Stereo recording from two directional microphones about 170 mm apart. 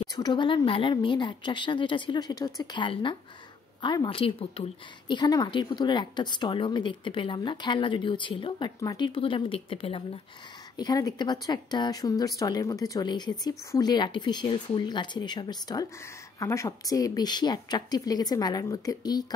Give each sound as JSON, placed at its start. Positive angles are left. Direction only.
{"t": 0.0, "sound": "speech", "side_deg": 25}
{"t": 10.8, "sound": "speech", "side_deg": 20}